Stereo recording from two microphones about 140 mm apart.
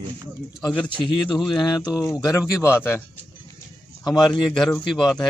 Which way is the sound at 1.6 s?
30° left (ahead or behind).